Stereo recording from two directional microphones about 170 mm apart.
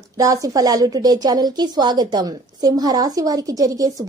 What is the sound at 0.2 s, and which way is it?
A woman's voice, 20° right (ahead or behind).